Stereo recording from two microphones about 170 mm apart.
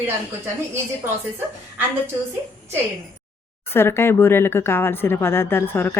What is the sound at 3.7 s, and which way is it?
Speech, 15° left (ahead or behind).